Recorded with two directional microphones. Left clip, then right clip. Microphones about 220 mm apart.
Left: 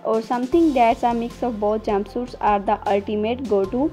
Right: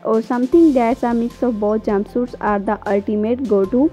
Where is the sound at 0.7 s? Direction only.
45° right (ahead or behind).